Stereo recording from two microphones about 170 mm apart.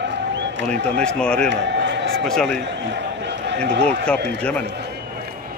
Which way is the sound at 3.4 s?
90° right.